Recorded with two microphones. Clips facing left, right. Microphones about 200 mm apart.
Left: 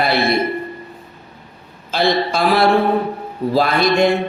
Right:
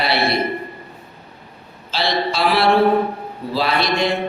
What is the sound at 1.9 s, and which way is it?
A man's voice, 50° left (ahead or behind).